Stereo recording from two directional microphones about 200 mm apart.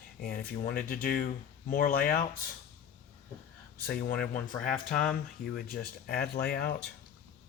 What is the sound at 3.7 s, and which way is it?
Speech, 50° left (ahead or behind).